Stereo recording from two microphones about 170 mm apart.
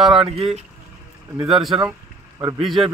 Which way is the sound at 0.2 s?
35° right (ahead or behind).